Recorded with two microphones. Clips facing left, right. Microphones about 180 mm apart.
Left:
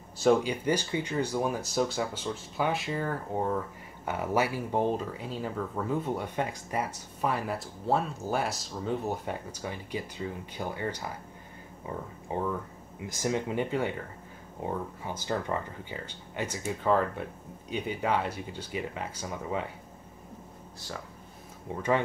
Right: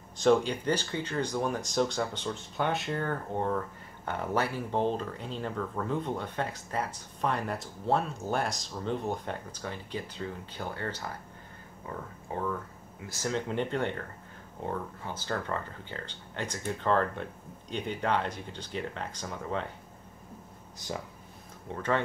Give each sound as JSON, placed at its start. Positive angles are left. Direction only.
{"t": 0.2, "sound": "speech", "side_deg": 5}
{"t": 12.3, "sound": "speech", "side_deg": 15}